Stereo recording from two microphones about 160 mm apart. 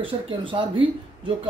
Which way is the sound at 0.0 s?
30° right (ahead or behind).